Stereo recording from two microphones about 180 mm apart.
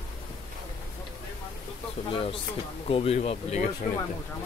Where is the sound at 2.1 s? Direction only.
30° left (ahead or behind).